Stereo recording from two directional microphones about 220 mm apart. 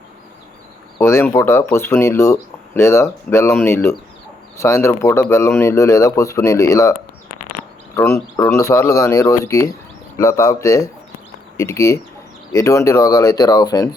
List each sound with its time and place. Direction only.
0.9 s speech: 10° left (ahead or behind)
7.9 s speech: 15° left (ahead or behind)